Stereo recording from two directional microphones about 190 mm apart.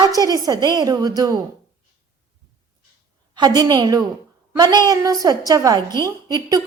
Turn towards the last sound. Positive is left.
turn(degrees=-20)  # may be behind; listen again after turning